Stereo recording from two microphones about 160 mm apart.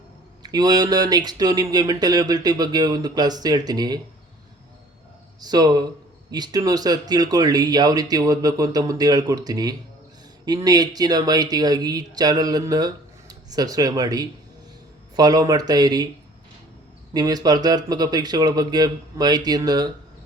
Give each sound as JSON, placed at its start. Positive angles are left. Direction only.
{"t": 0.4, "sound": "speech", "side_deg": -25}
{"t": 5.4, "sound": "speech", "side_deg": -25}
{"t": 17.2, "sound": "speech", "side_deg": -25}